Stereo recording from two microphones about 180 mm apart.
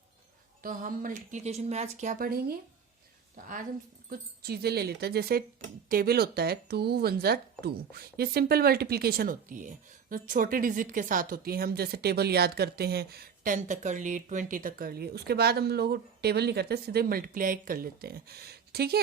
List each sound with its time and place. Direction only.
0.6 s speech: 50° right (ahead or behind)
4.1 s speech: 60° right (ahead or behind)